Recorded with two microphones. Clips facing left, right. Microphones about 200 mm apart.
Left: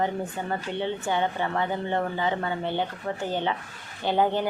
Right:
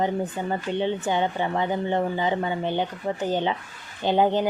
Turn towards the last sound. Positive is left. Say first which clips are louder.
# right 3 dB
turn(degrees=-20)  # may be behind; listen again after turning